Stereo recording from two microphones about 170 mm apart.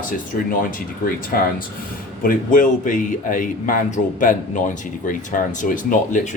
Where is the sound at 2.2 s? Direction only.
50° left (ahead or behind).